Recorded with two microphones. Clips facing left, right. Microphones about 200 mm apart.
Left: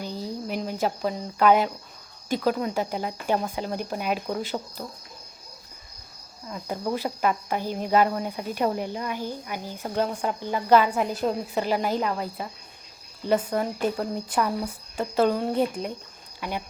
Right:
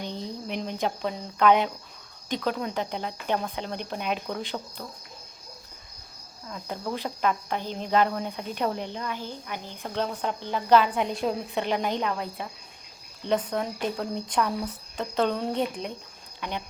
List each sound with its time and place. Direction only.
0.0 s speech: 5° left (ahead or behind)
6.5 s speech: 10° left (ahead or behind)